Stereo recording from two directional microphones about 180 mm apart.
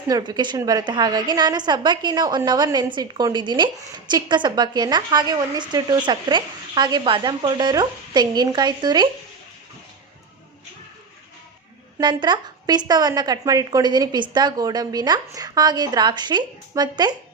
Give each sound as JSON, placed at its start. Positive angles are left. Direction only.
{"t": 0.1, "sound": "a woman's voice", "side_deg": -25}
{"t": 11.9, "sound": "a woman's voice", "side_deg": -25}